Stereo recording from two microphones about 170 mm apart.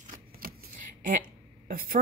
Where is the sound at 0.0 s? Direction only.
55° right (ahead or behind).